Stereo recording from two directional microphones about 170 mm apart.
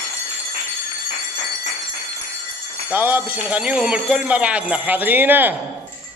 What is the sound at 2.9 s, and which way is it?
Speech, 10° right (ahead or behind).